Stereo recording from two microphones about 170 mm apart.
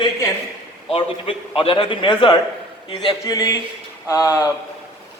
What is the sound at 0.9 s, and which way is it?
A man's voice, 30° left (ahead or behind).